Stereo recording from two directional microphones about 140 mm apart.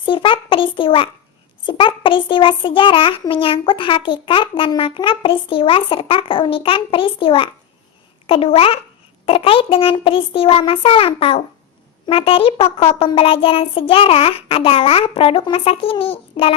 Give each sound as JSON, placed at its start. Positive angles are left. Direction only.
{"t": 0.0, "sound": "child singing", "side_deg": 35}